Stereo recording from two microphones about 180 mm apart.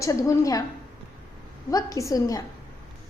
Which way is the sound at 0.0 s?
20° left (ahead or behind).